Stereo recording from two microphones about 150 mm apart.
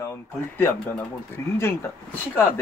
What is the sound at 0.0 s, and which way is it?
Speech, 15° left (ahead or behind).